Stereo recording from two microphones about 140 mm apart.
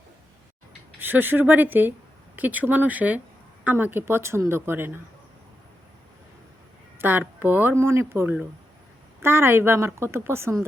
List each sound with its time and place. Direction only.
0.9 s speech: 15° right (ahead or behind)
7.0 s speech: 15° right (ahead or behind)